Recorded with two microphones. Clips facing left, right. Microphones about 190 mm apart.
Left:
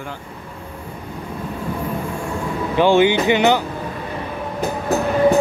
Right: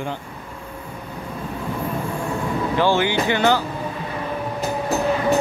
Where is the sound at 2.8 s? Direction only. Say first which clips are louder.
Left 6 dB; 20° left (ahead or behind).